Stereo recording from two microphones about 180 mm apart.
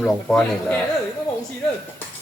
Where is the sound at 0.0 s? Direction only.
5° left (ahead or behind).